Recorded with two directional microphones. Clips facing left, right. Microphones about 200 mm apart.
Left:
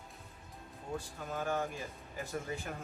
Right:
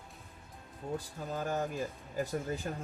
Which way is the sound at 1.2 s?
40° right (ahead or behind).